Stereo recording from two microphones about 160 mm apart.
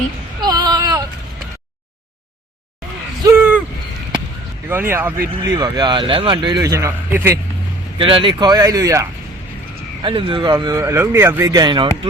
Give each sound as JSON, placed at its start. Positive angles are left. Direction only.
{"t": 0.4, "sound": "a sound", "side_deg": -25}
{"t": 3.3, "sound": "a sound", "side_deg": -10}
{"t": 4.7, "sound": "speech", "side_deg": -15}
{"t": 5.6, "sound": "speech", "side_deg": -30}
{"t": 7.9, "sound": "speech", "side_deg": -35}
{"t": 10.0, "sound": "speech", "side_deg": -30}